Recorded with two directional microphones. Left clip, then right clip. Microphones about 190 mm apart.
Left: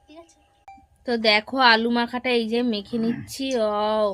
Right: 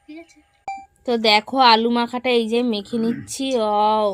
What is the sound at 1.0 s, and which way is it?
A woman's voice, 10° right (ahead or behind).